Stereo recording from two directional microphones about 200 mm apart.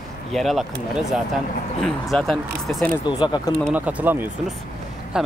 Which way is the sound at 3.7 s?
10° right (ahead or behind).